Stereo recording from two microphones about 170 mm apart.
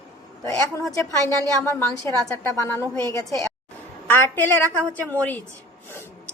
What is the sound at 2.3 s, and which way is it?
A woman's voice, 15° left (ahead or behind).